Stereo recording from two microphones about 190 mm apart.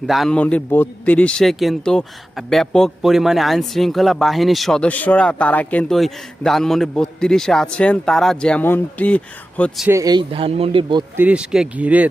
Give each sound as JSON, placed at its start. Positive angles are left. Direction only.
{"t": 0.1, "sound": "a man's voice", "side_deg": 0}
{"t": 9.8, "sound": "speech", "side_deg": -15}
{"t": 11.2, "sound": "speech", "side_deg": -5}